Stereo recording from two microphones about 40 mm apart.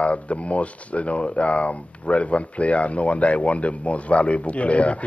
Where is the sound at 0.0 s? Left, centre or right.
Left.